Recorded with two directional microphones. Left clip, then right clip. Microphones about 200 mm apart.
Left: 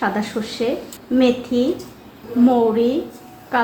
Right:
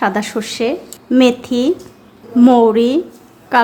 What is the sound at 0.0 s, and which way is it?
A woman's voice, 35° right (ahead or behind).